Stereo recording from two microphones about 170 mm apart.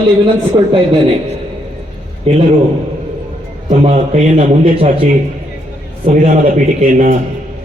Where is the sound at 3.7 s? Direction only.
45° right (ahead or behind).